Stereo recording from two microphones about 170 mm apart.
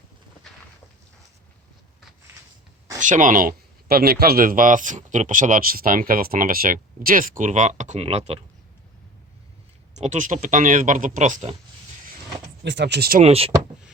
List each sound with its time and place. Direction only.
3.0 s speech: 50° right (ahead or behind)
9.9 s speech: 45° right (ahead or behind)
12.6 s speech: 90° right; by 13.2 s 65° right (ahead or behind)
13.2 s speech: 35° right (ahead or behind)